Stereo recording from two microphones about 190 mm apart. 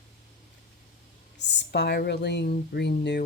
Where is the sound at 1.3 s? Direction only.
65° left (ahead or behind).